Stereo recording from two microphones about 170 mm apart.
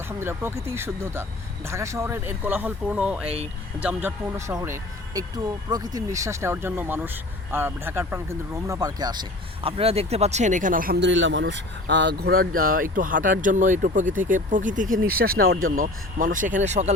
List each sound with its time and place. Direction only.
0.2 s speech: 15° right (ahead or behind)
3.2 s speech: 35° right (ahead or behind)
3.8 s speech: 10° right (ahead or behind)
9.6 s speech: 35° right (ahead or behind)